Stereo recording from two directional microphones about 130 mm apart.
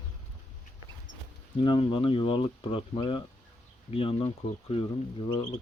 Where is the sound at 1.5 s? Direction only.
40° left (ahead or behind).